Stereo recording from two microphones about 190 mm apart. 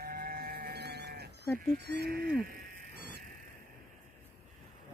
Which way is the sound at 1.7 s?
60° right (ahead or behind).